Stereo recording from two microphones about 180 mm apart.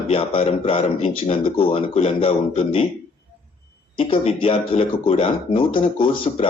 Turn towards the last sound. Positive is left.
turn(degrees=30)  # may be behind; listen again after turning